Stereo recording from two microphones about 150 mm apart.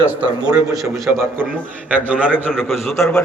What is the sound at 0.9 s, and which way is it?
Speech, centre (ahead or behind).